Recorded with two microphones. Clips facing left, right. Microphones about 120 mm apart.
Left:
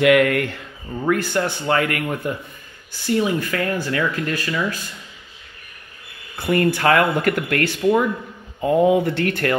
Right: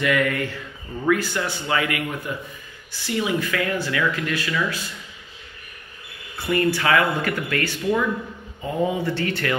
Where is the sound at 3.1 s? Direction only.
40° left (ahead or behind).